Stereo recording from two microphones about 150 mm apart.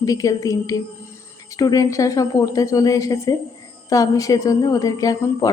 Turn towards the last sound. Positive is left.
turn(degrees=25)  # may be behind; listen again after turning